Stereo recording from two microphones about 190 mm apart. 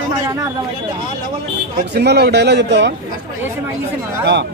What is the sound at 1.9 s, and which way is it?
Speech, 60° right (ahead or behind).